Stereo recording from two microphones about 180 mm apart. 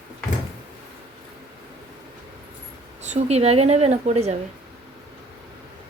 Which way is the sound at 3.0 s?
35° right (ahead or behind).